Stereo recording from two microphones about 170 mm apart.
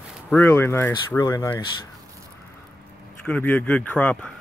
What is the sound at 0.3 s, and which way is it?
Speech, 15° left (ahead or behind).